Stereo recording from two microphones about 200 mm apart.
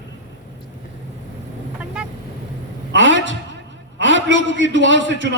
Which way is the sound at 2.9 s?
65° right (ahead or behind).